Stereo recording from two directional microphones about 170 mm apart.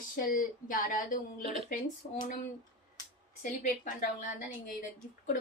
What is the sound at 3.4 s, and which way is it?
Speech, 50° left (ahead or behind).